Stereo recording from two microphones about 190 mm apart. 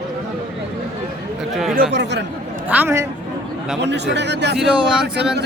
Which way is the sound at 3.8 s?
65° right (ahead or behind).